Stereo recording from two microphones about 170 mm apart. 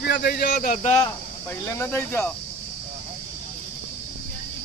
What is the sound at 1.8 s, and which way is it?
Speech, 15° left (ahead or behind).